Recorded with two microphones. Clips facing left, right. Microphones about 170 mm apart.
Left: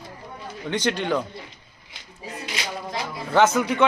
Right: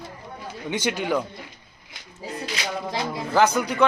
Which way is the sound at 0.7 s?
10° right (ahead or behind).